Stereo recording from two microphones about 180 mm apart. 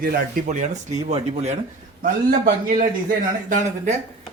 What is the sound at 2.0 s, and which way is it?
Speech, 50° right (ahead or behind).